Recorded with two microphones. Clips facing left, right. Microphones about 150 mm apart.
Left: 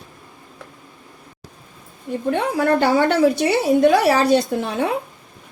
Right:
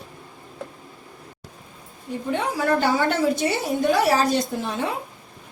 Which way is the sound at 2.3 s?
60° left (ahead or behind).